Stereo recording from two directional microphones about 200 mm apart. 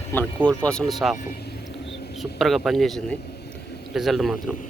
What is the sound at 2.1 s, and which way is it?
Speech, centre (ahead or behind).